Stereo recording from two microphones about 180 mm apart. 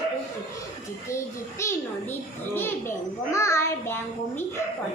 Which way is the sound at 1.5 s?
15° left (ahead or behind).